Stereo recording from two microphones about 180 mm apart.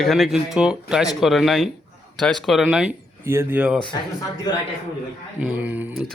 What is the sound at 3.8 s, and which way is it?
Speech, 20° left (ahead or behind).